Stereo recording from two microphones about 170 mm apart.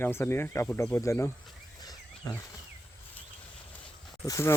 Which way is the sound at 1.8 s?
20° left (ahead or behind).